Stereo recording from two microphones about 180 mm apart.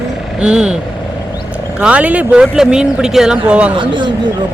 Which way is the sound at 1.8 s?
5° right (ahead or behind).